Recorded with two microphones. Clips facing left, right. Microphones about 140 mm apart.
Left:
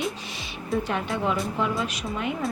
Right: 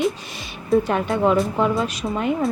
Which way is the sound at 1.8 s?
35° right (ahead or behind).